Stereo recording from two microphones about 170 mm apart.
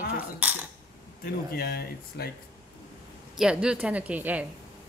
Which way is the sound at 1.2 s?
65° left (ahead or behind).